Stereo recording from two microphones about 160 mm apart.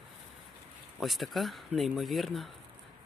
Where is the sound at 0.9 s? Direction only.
Centre (ahead or behind).